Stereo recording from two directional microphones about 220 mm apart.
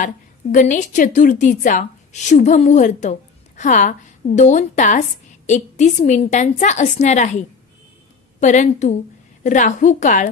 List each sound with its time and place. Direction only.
0.0 s a woman's voice: 35° left (ahead or behind)